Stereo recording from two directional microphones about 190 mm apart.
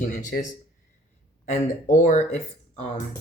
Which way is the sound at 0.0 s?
40° left (ahead or behind).